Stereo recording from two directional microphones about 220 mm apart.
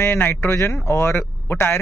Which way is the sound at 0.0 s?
10° left (ahead or behind).